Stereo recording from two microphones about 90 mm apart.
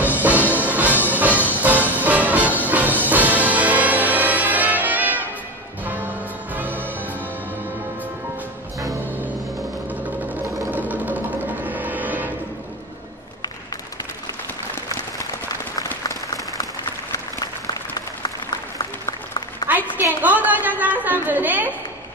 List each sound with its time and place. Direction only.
0.3 s music: 20° left (ahead or behind)
0.6 s music: 20° right (ahead or behind)
10.0 s music: 20° right (ahead or behind)
17.9 s applause: 45° left (ahead or behind)
20.0 s a sound: 20° right (ahead or behind)